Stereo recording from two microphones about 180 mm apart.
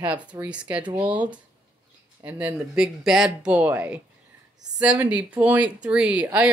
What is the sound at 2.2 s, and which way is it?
Speech, 5° right (ahead or behind).